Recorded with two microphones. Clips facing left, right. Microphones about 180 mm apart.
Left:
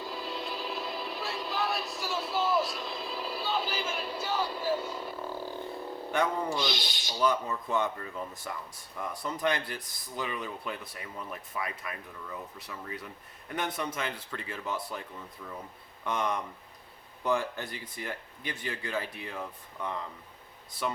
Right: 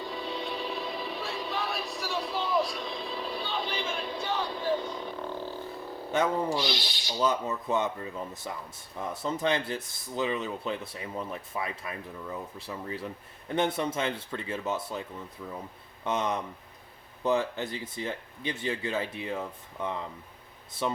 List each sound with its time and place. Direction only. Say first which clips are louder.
0.0 s music: right 2 dB; centre (ahead or behind)
6.1 s speech: right 3 dB; 20° right (ahead or behind)
16.0 s speech: right 2 dB; 20° right (ahead or behind)